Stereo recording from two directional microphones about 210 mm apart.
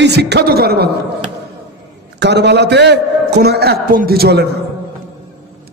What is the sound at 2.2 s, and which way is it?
A man's voice, 55° right (ahead or behind).